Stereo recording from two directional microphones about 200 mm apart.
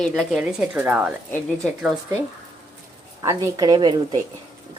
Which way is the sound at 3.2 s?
15° right (ahead or behind).